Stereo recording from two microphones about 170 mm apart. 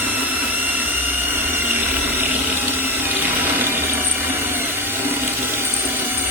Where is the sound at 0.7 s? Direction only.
10° right (ahead or behind).